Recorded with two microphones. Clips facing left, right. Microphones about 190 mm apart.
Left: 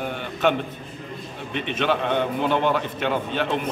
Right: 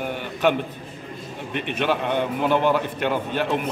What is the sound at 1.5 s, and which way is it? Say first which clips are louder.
Speech: even; 55° right (ahead or behind).